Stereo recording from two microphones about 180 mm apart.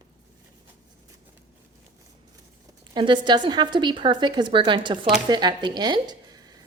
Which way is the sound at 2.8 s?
25° right (ahead or behind).